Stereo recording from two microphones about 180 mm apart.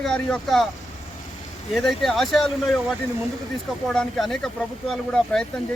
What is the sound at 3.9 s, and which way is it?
Speech, centre (ahead or behind).